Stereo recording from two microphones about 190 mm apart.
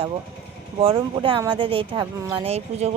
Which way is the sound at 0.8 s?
30° right (ahead or behind).